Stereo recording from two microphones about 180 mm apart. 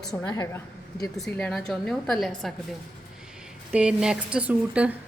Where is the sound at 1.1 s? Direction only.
Centre (ahead or behind).